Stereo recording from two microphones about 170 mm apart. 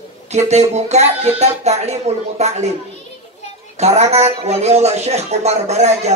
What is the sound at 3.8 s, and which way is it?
A man's voice, 40° right (ahead or behind).